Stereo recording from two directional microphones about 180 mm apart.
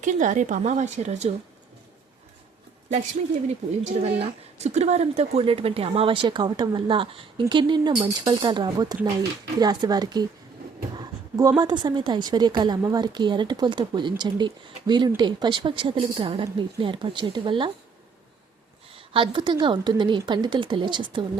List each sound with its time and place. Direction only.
0.0 s speech: 45° right (ahead or behind)
3.8 s a woman's voice: 35° right (ahead or behind)
10.9 s a sound: 20° right (ahead or behind)
11.6 s a woman's voice: 25° right (ahead or behind)
18.9 s a woman's voice: 30° right (ahead or behind)